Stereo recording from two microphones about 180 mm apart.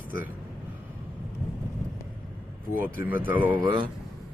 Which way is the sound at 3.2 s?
10° right (ahead or behind).